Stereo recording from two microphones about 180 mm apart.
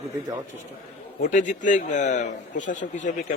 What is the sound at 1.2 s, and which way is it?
A man's voice, 45° left (ahead or behind).